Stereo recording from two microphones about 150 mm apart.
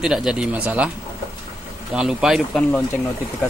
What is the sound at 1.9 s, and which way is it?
Speech, 5° right (ahead or behind).